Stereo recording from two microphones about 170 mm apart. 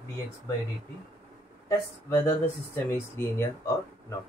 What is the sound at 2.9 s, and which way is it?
Speech, 15° left (ahead or behind).